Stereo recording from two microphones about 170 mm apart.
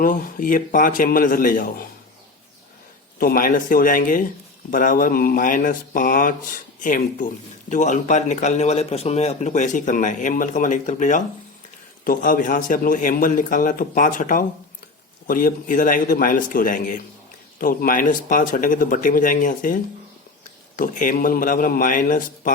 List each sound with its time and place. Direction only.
0.0 s a man's voice: 55° left (ahead or behind)
3.2 s a man's voice: 60° left (ahead or behind)